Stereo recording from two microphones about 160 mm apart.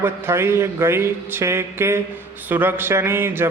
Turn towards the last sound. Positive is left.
turn(degrees=-15)  # may be behind; listen again after turning